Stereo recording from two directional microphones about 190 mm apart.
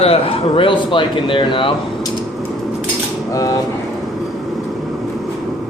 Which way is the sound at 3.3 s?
20° left (ahead or behind).